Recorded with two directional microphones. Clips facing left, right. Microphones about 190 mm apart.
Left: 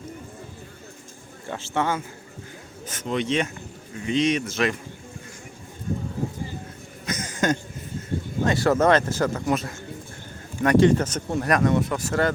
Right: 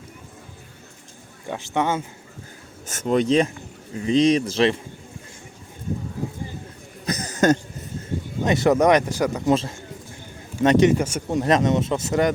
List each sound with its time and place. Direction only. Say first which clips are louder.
1.5 s speech: right 2 dB; 15° right (ahead or behind)
2.9 s speech: right 6 dB; 40° right (ahead or behind)
7.0 s a sound: right 5 dB; 35° right (ahead or behind)
8.4 s speech: right 2 dB; 20° right (ahead or behind)
9.5 s speech: right 4 dB; 25° right (ahead or behind)